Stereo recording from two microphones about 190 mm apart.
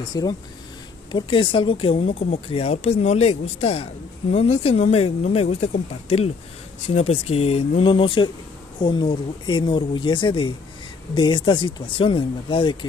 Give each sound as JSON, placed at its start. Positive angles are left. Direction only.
{"t": 0.1, "sound": "speech", "side_deg": 20}